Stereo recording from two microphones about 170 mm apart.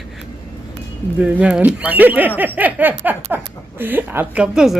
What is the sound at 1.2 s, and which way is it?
Speech, 10° right (ahead or behind).